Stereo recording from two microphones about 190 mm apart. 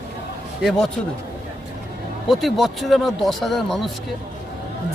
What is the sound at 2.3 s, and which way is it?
Speech, centre (ahead or behind).